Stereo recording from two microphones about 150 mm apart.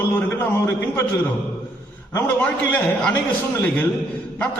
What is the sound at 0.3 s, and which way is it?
Speech, 15° left (ahead or behind).